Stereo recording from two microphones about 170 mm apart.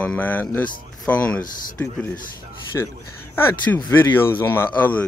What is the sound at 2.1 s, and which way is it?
Speech, 55° left (ahead or behind).